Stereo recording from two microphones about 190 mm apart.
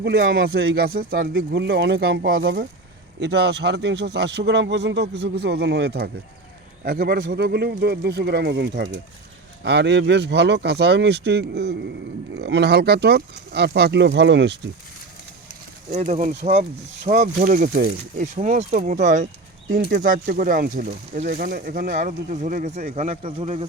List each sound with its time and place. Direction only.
0.0 s speech: 65° right (ahead or behind)
0.4 s speech: 60° right (ahead or behind)
1.5 s speech: 60° right (ahead or behind)
15.9 s speech: 35° right (ahead or behind)